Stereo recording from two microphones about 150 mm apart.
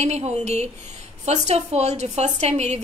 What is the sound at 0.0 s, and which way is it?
A woman's voice, 50° right (ahead or behind).